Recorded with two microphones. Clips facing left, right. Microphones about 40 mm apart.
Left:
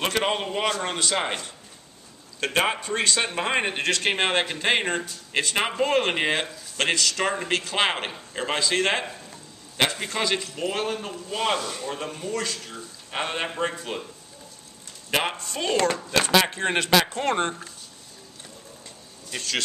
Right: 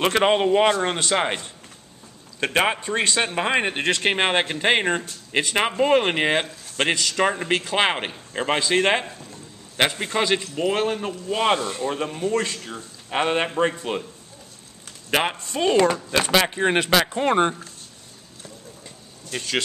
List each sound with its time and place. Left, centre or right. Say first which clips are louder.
0.0 s speech: right 6 dB; centre
3.5 s speech: right 2 dB; centre
15.0 s speech: right 3 dB; centre
19.3 s speech: right 3 dB; centre